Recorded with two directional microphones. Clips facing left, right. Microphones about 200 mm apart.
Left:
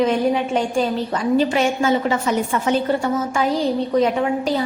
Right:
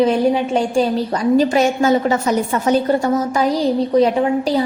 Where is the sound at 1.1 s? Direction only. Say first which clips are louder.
Right 4 dB; 40° right (ahead or behind).